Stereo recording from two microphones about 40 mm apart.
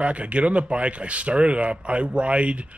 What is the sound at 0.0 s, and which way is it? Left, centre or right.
Speech, right.